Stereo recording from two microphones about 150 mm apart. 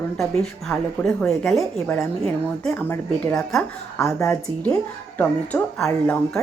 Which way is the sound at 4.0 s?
20° left (ahead or behind).